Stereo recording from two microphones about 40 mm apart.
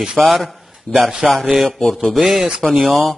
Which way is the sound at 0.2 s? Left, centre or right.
Centre.